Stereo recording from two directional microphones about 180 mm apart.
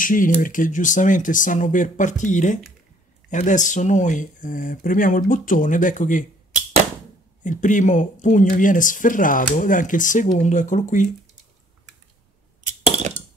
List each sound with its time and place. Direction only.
0.0 s speech: 45° left (ahead or behind)
7.4 s speech: 45° left (ahead or behind)